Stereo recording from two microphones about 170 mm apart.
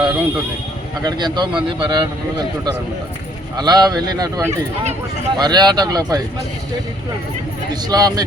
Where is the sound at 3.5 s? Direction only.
25° right (ahead or behind).